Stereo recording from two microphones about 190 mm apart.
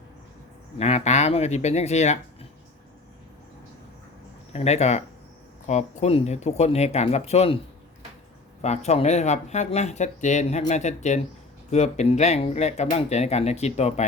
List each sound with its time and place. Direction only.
0.8 s speech: 35° left (ahead or behind)
4.5 s speech: 35° left (ahead or behind)
8.6 s speech: 35° left (ahead or behind)